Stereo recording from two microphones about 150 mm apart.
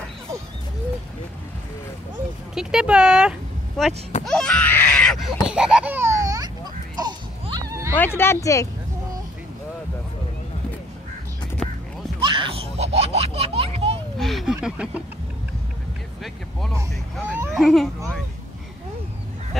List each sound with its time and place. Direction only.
2.5 s speech: 5° right (ahead or behind)
4.2 s a sound: 5° left (ahead or behind); by 6.5 s 25° right (ahead or behind)
7.0 s music: 30° right (ahead or behind)
8.0 s speech: 15° left (ahead or behind)
11.6 s music: centre (ahead or behind)
12.2 s a sound: 35° right (ahead or behind)
14.1 s speech: centre (ahead or behind)
17.3 s speech: 15° right (ahead or behind)
17.6 s speech: centre (ahead or behind)